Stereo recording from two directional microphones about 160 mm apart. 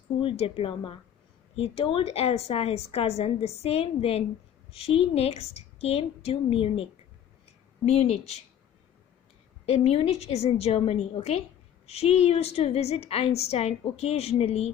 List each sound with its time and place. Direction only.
0.2 s a woman's voice: 35° left (ahead or behind)
7.9 s a woman's voice: 40° left (ahead or behind)
9.6 s a woman's voice: 40° left (ahead or behind)